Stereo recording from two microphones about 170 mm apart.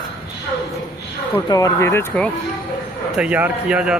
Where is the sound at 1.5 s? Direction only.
20° left (ahead or behind).